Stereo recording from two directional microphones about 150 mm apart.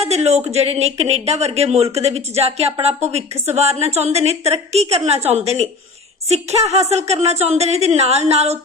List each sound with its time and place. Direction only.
0.0 s a woman's voice: 45° right (ahead or behind)